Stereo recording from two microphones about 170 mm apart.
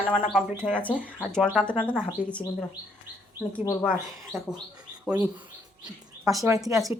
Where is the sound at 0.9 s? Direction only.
10° right (ahead or behind); by 3.8 s 15° left (ahead or behind).